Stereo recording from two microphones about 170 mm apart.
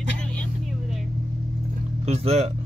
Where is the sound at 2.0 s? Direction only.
40° right (ahead or behind).